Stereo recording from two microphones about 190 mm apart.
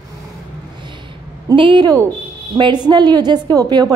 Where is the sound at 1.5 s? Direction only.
25° right (ahead or behind).